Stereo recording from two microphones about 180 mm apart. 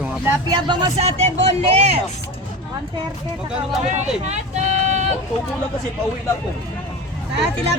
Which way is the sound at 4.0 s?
40° right (ahead or behind).